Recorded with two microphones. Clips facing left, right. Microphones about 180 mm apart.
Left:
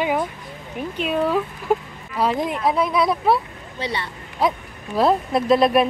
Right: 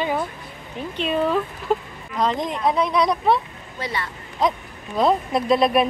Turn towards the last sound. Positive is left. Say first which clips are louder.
# left 2 dB
turn(degrees=0)  # may be behind; listen again after turning